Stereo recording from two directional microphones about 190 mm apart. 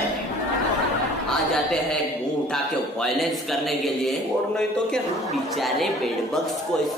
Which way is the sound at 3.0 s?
Centre (ahead or behind).